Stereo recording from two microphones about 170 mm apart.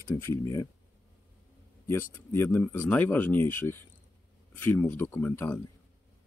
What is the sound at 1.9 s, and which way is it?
Speech, 15° left (ahead or behind).